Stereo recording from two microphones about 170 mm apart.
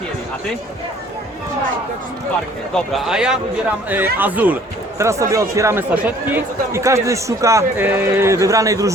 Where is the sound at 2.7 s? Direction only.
Centre (ahead or behind).